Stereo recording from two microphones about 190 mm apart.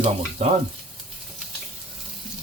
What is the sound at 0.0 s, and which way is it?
Speech, 35° right (ahead or behind).